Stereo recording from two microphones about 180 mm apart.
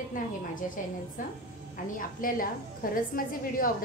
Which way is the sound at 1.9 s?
50° left (ahead or behind).